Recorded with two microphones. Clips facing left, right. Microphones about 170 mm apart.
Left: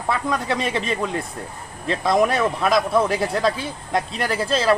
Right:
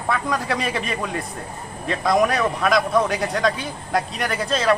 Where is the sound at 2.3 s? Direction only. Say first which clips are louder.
Left 1 dB; 30° left (ahead or behind).